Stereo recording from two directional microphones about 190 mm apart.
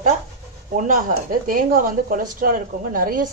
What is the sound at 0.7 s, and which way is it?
Speech, 45° right (ahead or behind).